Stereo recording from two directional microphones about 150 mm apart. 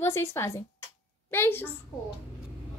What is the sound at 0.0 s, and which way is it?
A woman's voice, 15° left (ahead or behind).